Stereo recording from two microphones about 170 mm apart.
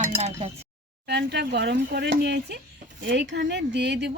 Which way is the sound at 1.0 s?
75° right (ahead or behind).